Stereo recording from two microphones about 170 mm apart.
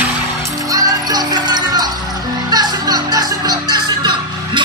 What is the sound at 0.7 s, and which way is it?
Music, 20° right (ahead or behind).